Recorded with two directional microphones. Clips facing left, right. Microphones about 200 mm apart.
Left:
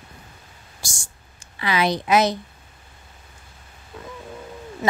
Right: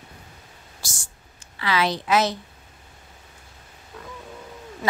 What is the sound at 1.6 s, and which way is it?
Speech, 15° left (ahead or behind).